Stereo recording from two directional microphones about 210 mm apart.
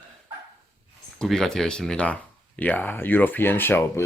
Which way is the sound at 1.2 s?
Centre (ahead or behind).